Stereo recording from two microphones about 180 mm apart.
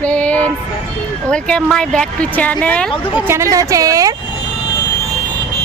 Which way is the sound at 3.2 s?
15° right (ahead or behind).